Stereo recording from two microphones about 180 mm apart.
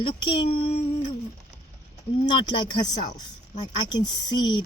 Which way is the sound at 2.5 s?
25° left (ahead or behind).